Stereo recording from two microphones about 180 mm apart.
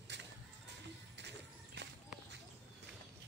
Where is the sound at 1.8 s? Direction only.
70° right (ahead or behind).